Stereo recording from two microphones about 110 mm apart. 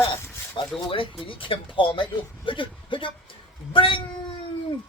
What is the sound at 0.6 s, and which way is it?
Speech, 50° left (ahead or behind).